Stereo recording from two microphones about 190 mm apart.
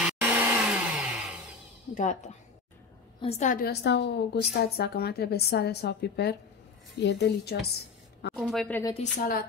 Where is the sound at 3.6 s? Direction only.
65° left (ahead or behind).